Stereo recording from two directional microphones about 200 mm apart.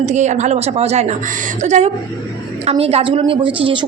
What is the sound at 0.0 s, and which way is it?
A woman's voice, 35° right (ahead or behind).